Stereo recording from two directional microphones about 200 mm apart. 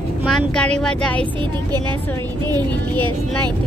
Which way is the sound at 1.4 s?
25° right (ahead or behind).